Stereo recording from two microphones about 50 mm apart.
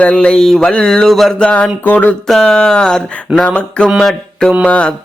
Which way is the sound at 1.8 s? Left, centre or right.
Left.